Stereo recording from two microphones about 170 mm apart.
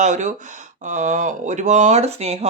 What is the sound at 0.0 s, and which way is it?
Speech, 45° right (ahead or behind).